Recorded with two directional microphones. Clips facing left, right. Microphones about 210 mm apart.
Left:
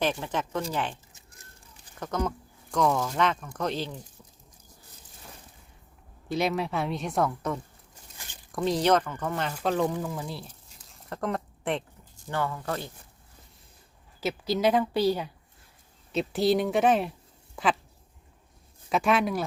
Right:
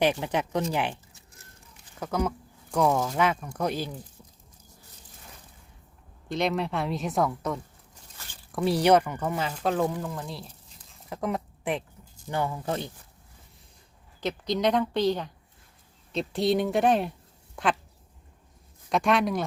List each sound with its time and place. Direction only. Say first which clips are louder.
0.0 s speech: right 3 dB; 15° right (ahead or behind)
2.0 s speech: right 2 dB; 5° right (ahead or behind)
6.2 s a woman's voice: even; 5° left (ahead or behind)
8.2 s a sound: even; 15° left (ahead or behind)
8.5 s a woman's voice: right 2 dB; 10° right (ahead or behind)
10.8 s a sound: right 1 dB; 5° right (ahead or behind)
12.3 s speech: right 1 dB; 15° right (ahead or behind)
14.2 s a woman's voice: even; 5° left (ahead or behind)
18.9 s a woman's voice: right 1 dB; 5° left (ahead or behind)